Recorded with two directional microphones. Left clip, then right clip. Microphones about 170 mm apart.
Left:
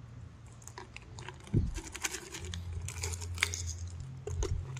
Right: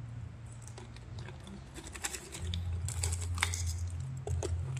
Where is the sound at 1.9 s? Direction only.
25° left (ahead or behind).